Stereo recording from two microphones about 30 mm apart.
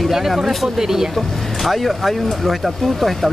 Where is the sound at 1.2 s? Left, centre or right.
Centre.